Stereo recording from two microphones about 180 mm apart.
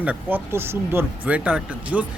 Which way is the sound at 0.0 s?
10° right (ahead or behind).